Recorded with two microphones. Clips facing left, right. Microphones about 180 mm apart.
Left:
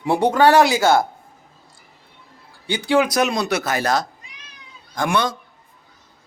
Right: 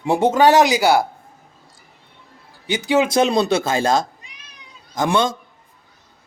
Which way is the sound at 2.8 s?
25° right (ahead or behind).